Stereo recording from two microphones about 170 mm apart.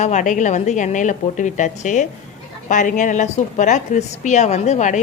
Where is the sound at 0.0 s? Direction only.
45° left (ahead or behind).